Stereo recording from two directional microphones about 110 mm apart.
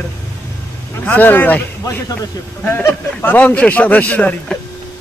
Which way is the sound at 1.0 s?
15° left (ahead or behind).